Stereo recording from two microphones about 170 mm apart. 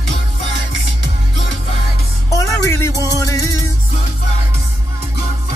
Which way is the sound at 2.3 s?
20° left (ahead or behind).